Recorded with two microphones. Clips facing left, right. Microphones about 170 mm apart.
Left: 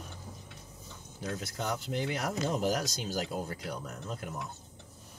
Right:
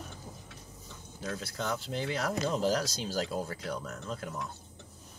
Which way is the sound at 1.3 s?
15° left (ahead or behind).